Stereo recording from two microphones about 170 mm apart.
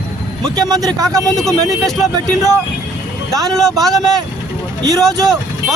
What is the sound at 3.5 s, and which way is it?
Speech, centre (ahead or behind).